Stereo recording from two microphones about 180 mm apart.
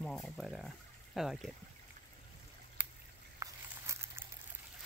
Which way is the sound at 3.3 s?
15° right (ahead or behind).